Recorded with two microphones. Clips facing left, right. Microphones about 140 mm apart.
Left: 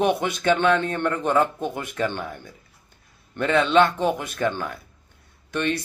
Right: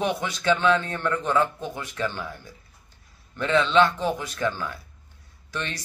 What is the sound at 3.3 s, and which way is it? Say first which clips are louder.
A man's voice: left 2 dB; 50° left (ahead or behind).